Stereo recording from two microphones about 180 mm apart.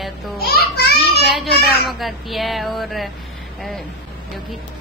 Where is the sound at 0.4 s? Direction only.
60° left (ahead or behind).